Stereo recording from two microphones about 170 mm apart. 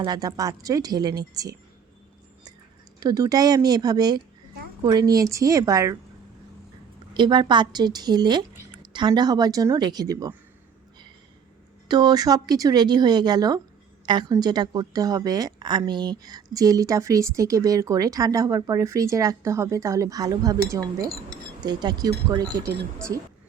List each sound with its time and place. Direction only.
0.0 s speech: 25° right (ahead or behind)
3.0 s speech: 20° right (ahead or behind)
7.1 s speech: 25° right (ahead or behind)
11.9 s speech: 25° right (ahead or behind)